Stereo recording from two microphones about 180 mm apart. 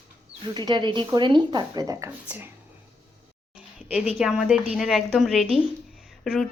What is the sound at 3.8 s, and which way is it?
A woman's voice, 5° right (ahead or behind).